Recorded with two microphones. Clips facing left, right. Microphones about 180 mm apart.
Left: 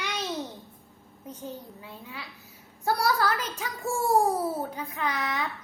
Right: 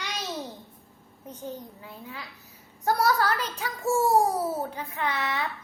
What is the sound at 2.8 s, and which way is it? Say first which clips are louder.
Speech: right 2 dB; 40° right (ahead or behind).